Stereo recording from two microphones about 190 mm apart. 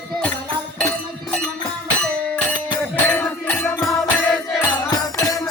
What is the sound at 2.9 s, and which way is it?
Music, 10° left (ahead or behind).